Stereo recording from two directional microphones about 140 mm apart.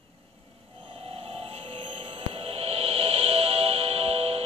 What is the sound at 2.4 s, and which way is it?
Music, 45° right (ahead or behind).